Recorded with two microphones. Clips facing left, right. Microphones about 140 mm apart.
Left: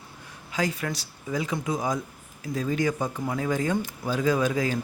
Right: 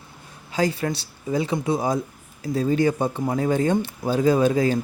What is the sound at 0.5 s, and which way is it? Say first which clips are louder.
Speech: right 5 dB; 30° right (ahead or behind).